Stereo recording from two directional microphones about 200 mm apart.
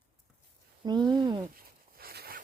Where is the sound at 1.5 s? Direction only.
50° right (ahead or behind).